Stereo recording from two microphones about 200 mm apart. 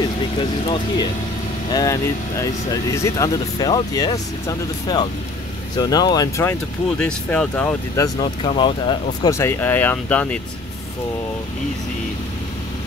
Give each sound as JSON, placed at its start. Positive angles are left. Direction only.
{"t": 0.4, "sound": "speech", "side_deg": 25}
{"t": 7.0, "sound": "speech", "side_deg": 5}
{"t": 9.2, "sound": "speech", "side_deg": 15}